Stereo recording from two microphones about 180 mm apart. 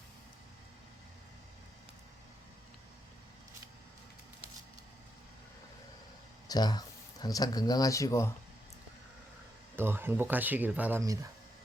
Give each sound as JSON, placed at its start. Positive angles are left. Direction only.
{"t": 6.5, "sound": "speech", "side_deg": 20}
{"t": 9.7, "sound": "speech", "side_deg": -10}